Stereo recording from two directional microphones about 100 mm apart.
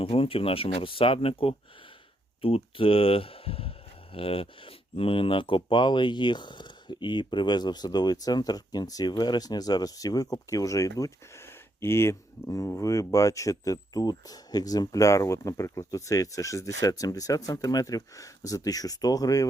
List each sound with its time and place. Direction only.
0.0 s speech: 70° left (ahead or behind); by 19.5 s 35° left (ahead or behind)